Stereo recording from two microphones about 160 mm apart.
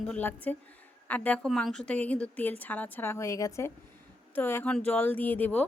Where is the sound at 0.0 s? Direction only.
10° left (ahead or behind).